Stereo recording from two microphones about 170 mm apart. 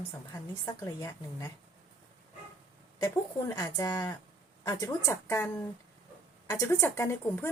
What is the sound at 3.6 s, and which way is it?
A woman's voice, 20° left (ahead or behind).